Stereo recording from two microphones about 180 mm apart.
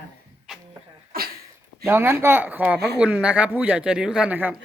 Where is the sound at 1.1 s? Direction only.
55° right (ahead or behind).